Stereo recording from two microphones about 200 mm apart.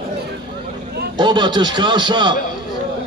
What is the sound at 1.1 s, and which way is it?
Speech, 20° right (ahead or behind).